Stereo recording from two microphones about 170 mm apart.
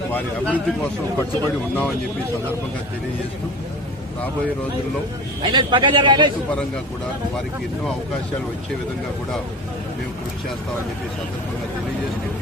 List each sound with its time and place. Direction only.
0.1 s a man's voice: 10° left (ahead or behind)
5.4 s a man's voice: 25° right (ahead or behind)